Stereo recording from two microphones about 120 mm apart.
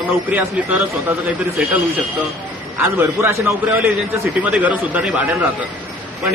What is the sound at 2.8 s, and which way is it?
A man's voice, 20° right (ahead or behind).